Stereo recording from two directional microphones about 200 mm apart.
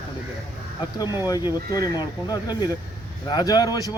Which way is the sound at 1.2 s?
20° left (ahead or behind).